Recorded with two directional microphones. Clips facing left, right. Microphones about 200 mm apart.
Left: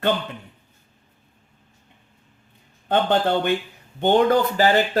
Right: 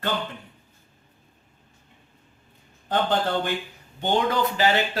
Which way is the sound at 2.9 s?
60° left (ahead or behind).